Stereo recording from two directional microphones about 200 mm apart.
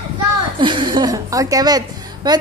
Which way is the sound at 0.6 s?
25° right (ahead or behind).